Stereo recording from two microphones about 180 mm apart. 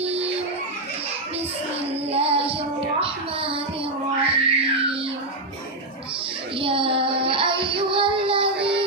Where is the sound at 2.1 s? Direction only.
35° right (ahead or behind).